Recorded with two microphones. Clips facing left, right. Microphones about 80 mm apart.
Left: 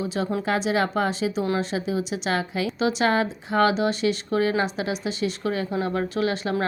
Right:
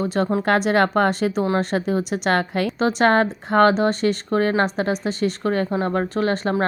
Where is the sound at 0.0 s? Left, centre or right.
Right.